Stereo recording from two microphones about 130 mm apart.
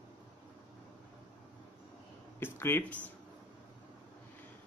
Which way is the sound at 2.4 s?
15° left (ahead or behind).